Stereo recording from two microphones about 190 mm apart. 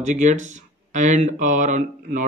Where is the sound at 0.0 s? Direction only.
40° right (ahead or behind).